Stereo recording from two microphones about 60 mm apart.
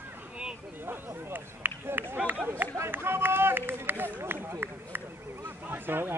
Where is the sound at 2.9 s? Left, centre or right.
Right.